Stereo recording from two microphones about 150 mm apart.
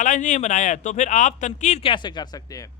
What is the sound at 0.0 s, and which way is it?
Speech, 55° left (ahead or behind).